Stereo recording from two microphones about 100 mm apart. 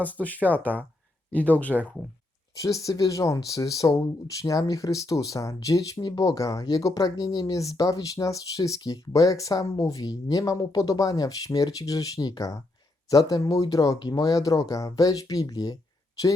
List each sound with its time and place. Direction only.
0.0 s speech: 15° left (ahead or behind)
2.6 s speech: 35° left (ahead or behind)